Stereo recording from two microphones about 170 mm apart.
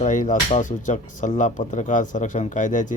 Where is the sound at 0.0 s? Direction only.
50° left (ahead or behind).